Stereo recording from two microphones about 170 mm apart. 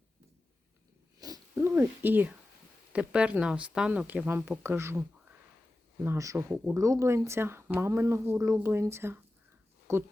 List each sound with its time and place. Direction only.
1.2 s speech: 20° right (ahead or behind)
6.1 s speech: 15° right (ahead or behind)